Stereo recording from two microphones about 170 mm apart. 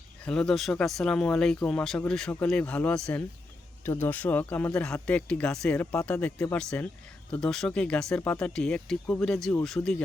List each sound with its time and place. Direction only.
0.3 s speech: 5° left (ahead or behind)